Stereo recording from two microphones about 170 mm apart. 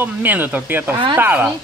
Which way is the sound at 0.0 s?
10° right (ahead or behind).